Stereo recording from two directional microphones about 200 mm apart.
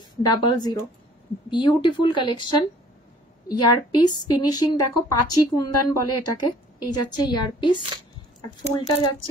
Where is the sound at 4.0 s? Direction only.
20° left (ahead or behind).